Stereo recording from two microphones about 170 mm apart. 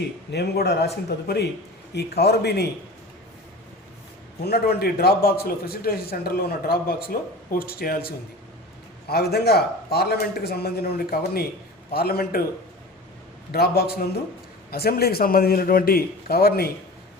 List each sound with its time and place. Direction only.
0.3 s a man's voice: 75° left (ahead or behind)
4.4 s a man's voice: 65° left (ahead or behind)
13.5 s a man's voice: 65° left (ahead or behind)